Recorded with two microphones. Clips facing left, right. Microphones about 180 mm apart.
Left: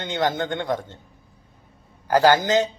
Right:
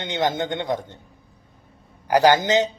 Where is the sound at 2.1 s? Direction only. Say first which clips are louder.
Even; 15° right (ahead or behind).